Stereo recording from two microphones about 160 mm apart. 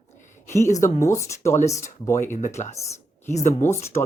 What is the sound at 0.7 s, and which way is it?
Speech, 50° left (ahead or behind).